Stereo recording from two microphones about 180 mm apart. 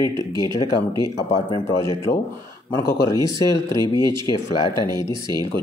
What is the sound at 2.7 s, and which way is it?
Speech, 20° left (ahead or behind).